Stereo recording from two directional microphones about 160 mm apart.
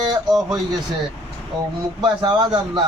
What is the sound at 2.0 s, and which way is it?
Speech, 25° right (ahead or behind).